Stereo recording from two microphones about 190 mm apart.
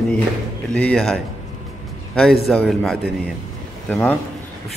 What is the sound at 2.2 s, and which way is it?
A man's voice, centre (ahead or behind).